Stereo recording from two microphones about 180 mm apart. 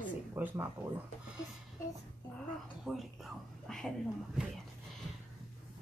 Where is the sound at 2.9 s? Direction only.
Centre (ahead or behind).